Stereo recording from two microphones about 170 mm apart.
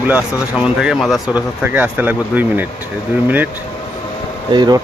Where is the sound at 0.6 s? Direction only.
5° right (ahead or behind).